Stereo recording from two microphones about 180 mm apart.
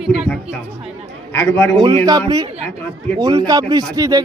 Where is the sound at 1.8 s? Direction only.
25° right (ahead or behind).